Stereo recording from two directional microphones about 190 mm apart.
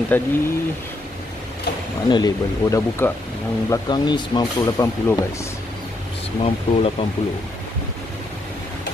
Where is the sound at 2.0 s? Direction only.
20° left (ahead or behind).